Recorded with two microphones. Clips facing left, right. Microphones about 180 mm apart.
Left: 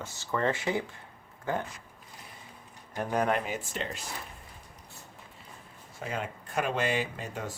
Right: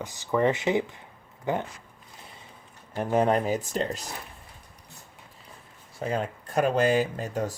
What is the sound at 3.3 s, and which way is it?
Speech, 40° right (ahead or behind).